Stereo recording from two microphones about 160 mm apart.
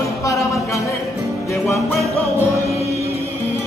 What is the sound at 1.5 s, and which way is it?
Music, 20° left (ahead or behind).